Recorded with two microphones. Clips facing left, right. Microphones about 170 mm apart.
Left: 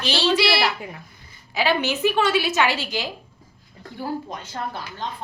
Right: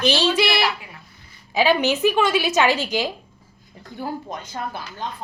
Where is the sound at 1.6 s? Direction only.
15° right (ahead or behind).